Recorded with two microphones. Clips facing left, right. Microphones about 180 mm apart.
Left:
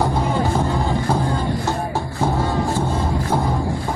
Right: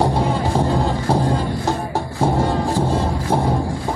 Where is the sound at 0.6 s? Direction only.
30° right (ahead or behind).